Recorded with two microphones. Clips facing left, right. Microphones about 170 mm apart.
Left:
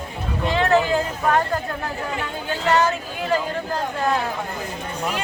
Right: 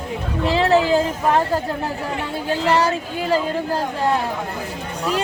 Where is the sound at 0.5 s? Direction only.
30° right (ahead or behind).